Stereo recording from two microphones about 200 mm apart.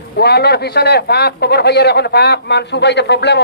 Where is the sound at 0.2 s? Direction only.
55° left (ahead or behind).